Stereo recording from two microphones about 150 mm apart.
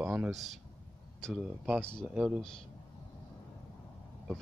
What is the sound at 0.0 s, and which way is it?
Speech, 15° right (ahead or behind).